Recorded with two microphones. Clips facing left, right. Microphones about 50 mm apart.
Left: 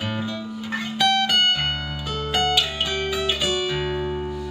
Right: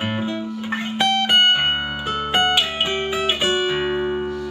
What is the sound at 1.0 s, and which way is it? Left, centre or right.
Music, right.